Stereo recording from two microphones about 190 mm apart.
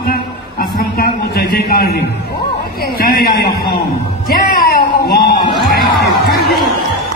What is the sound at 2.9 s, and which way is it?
Speech, 50° left (ahead or behind).